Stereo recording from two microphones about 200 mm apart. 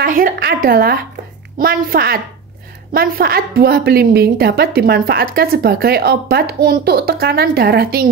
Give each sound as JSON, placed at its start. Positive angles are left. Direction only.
{"t": 0.0, "sound": "a woman's voice", "side_deg": -50}